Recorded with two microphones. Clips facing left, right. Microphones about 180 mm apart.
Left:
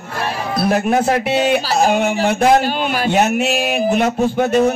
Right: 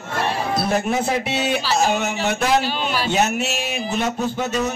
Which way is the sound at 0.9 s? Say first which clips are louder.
Left 6 dB; 50° left (ahead or behind).